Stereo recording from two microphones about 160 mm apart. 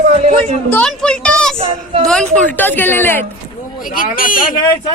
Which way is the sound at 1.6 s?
35° right (ahead or behind).